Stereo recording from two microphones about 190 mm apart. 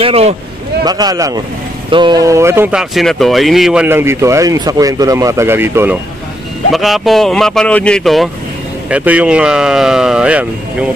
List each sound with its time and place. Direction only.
0.0 s speech: 35° right (ahead or behind)
0.8 s speech: 20° right (ahead or behind)
6.7 s speech: centre (ahead or behind)